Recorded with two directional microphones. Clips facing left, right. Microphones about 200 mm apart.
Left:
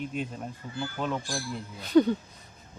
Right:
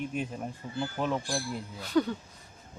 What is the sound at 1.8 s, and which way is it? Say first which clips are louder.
Speech: left 6 dB; 20° left (ahead or behind).